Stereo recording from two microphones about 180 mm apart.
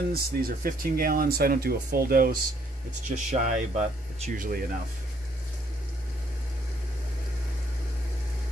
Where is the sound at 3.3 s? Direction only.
45° right (ahead or behind).